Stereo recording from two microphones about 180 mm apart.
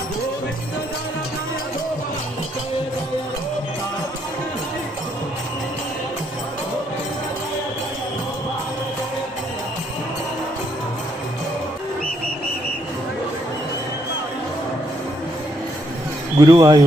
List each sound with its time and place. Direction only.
16.3 s speech: 20° right (ahead or behind)